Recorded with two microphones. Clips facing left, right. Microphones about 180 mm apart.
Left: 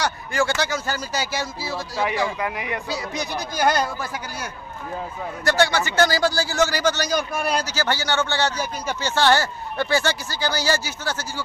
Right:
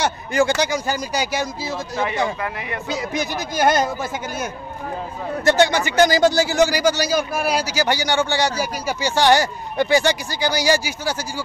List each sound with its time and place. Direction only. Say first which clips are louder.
0.0 s a man's voice: right 4 dB; 20° right (ahead or behind)
2.4 s speech: left 1 dB; 15° left (ahead or behind)
2.9 s a man's voice: right 3 dB; 20° right (ahead or behind)